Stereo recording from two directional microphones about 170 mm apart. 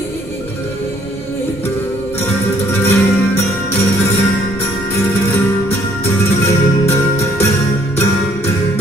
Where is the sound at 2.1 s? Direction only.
10° left (ahead or behind).